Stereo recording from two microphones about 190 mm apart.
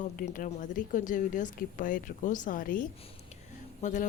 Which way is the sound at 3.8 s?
40° left (ahead or behind).